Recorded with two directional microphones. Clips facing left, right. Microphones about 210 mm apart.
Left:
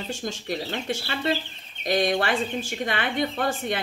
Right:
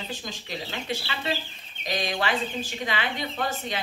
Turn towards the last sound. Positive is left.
turn(degrees=55)  # may be behind; listen again after turning